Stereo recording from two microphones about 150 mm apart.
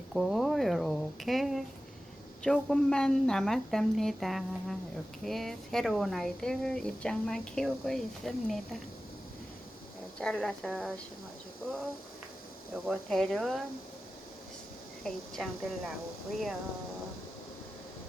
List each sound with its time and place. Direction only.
0.1 s a sound: centre (ahead or behind)
2.4 s speech: 5° left (ahead or behind)
10.2 s speech: 5° left (ahead or behind)
12.7 s speech: centre (ahead or behind)
15.0 s speech: centre (ahead or behind)